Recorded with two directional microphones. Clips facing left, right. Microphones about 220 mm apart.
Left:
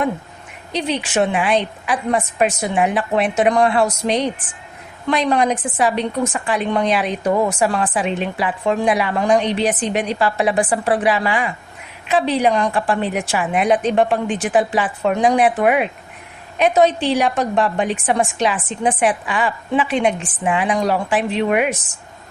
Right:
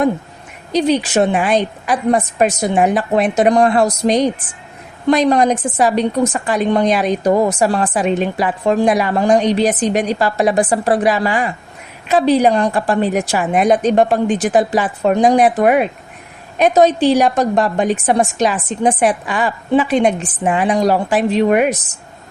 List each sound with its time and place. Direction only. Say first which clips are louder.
0.7 s a woman's voice: right 7 dB; 40° right (ahead or behind)